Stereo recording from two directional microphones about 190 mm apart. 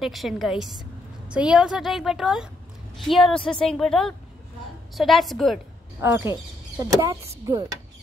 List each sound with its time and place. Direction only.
0.0 s a woman's voice: centre (ahead or behind)
5.9 s speech: 15° right (ahead or behind)